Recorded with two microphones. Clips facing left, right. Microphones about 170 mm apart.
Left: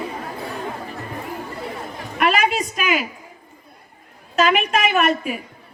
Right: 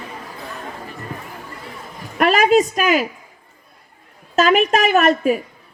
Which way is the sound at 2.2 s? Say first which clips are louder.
Right 6 dB; 45° right (ahead or behind).